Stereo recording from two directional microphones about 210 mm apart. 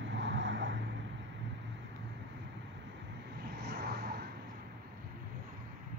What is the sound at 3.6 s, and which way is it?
Vehicle, 50° right (ahead or behind).